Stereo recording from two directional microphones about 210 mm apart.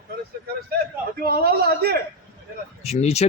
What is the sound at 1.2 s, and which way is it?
Speech, 50° right (ahead or behind).